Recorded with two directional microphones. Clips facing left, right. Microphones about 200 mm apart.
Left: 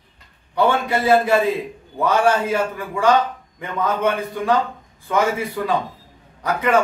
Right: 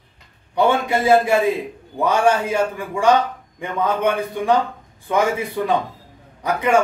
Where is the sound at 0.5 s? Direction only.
15° right (ahead or behind).